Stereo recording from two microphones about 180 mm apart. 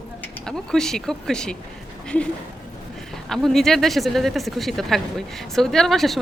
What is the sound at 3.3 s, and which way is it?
Speech, centre (ahead or behind).